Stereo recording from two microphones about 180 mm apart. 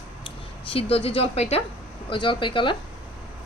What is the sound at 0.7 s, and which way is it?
Speech, 35° left (ahead or behind).